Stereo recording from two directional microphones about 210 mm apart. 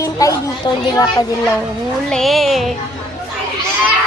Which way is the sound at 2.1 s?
Centre (ahead or behind).